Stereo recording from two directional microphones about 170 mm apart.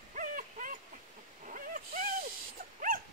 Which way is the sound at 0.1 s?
50° right (ahead or behind).